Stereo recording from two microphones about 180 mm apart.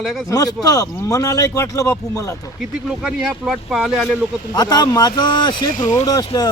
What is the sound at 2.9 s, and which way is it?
Speech, 5° right (ahead or behind).